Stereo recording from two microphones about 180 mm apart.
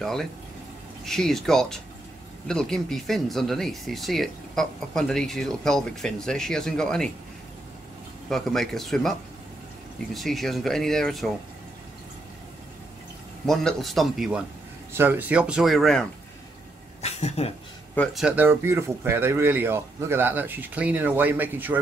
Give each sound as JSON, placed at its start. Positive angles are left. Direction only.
{"t": 0.0, "sound": "speech", "side_deg": 0}
{"t": 8.3, "sound": "speech", "side_deg": 0}
{"t": 10.1, "sound": "speech", "side_deg": 0}
{"t": 13.5, "sound": "speech", "side_deg": 0}
{"t": 17.0, "sound": "speech", "side_deg": 35}
{"t": 17.9, "sound": "speech", "side_deg": 5}
{"t": 18.2, "sound": "speech", "side_deg": -10}